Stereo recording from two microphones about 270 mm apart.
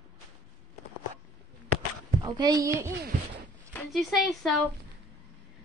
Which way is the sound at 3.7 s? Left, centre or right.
Centre.